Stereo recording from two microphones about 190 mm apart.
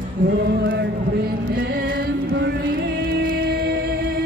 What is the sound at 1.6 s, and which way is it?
Music, 55° right (ahead or behind).